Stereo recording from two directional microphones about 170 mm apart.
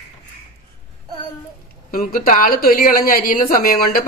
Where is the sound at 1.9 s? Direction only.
55° left (ahead or behind).